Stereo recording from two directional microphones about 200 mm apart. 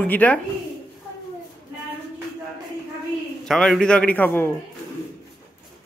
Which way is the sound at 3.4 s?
Centre (ahead or behind).